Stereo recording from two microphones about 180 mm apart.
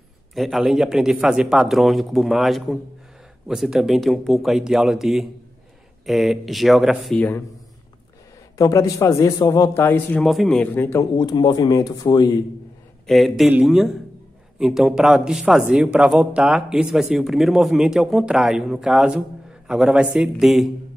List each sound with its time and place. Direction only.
0.3 s speech: centre (ahead or behind)
7.2 s speech: 15° left (ahead or behind)
8.5 s speech: 20° left (ahead or behind)
10.2 s speech: centre (ahead or behind); by 12.3 s 20° left (ahead or behind)
13.0 s speech: centre (ahead or behind)